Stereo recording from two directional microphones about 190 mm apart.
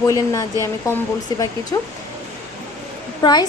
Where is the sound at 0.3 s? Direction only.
15° left (ahead or behind).